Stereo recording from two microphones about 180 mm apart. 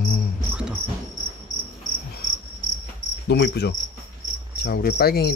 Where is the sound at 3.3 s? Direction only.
65° left (ahead or behind).